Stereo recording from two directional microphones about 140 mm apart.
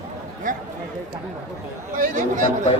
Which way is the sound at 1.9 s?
70° right (ahead or behind).